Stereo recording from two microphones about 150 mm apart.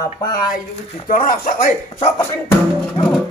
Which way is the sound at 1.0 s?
65° left (ahead or behind).